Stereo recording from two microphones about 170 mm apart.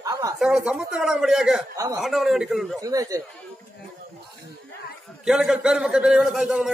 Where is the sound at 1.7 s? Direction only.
20° right (ahead or behind).